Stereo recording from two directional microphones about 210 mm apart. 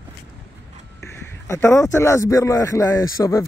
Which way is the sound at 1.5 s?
15° left (ahead or behind).